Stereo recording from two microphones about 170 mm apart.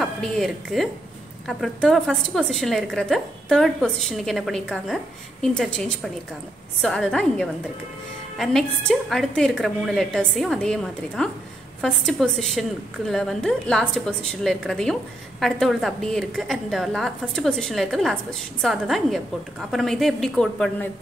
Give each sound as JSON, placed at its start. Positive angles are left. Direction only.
{"t": 0.0, "sound": "a woman's voice", "side_deg": 0}